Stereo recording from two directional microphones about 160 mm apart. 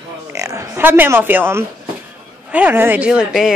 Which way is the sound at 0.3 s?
20° right (ahead or behind).